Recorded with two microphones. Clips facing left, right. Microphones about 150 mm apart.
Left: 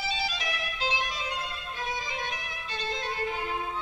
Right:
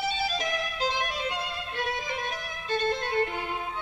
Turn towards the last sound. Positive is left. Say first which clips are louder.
# right 6 dB
turn(degrees=-55)  # may be behind; listen again after turning